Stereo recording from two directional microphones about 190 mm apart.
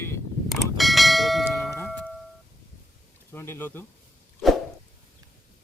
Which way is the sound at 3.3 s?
10° left (ahead or behind).